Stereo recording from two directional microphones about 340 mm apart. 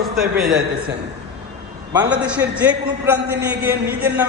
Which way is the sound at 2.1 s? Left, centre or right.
Centre.